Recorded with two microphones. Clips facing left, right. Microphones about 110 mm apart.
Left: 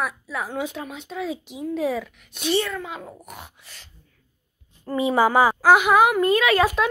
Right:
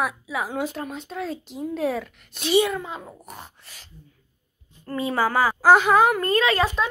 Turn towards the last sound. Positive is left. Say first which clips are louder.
# left 2 dB
turn(degrees=10)  # may be behind; listen again after turning